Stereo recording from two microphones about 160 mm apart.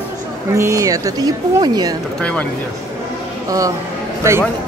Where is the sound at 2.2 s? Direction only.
5° left (ahead or behind).